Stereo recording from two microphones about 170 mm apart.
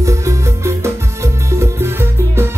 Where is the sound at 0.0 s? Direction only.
20° right (ahead or behind).